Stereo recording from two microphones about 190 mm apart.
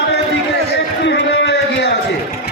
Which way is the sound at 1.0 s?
65° left (ahead or behind).